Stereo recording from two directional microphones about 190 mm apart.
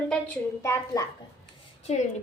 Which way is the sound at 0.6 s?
15° left (ahead or behind).